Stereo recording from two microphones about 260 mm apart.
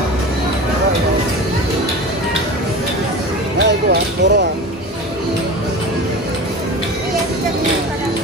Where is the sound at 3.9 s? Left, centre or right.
Right.